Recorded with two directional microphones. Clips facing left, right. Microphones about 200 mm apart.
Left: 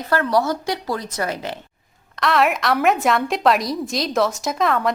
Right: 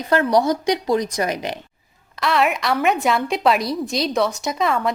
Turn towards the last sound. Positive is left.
turn(degrees=0)  # may be behind; listen again after turning